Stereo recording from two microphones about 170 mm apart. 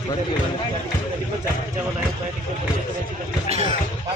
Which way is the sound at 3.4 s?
40° right (ahead or behind).